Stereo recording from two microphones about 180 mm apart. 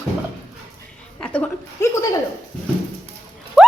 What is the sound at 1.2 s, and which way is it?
Speech, 5° left (ahead or behind).